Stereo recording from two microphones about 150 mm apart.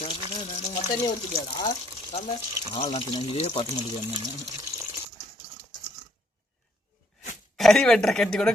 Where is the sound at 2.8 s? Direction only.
45° left (ahead or behind).